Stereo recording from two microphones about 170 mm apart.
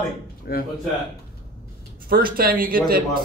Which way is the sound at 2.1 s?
60° right (ahead or behind).